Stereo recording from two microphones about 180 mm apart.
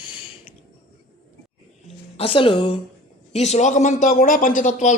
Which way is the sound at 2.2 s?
30° left (ahead or behind).